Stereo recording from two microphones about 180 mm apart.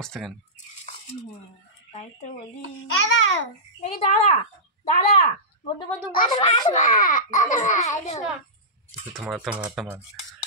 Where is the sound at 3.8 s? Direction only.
35° left (ahead or behind).